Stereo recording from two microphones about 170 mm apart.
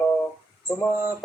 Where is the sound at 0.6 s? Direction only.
15° left (ahead or behind).